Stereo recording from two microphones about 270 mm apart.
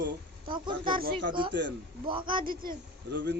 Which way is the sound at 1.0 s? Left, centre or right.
Right.